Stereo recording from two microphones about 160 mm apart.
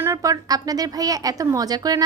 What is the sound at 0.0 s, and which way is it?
A woman's voice, 20° right (ahead or behind).